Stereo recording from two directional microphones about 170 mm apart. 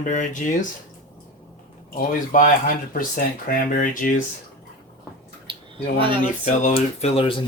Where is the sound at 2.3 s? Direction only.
55° left (ahead or behind).